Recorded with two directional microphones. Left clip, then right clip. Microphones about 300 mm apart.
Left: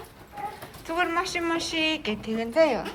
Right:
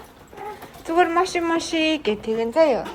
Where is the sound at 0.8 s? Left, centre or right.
Centre.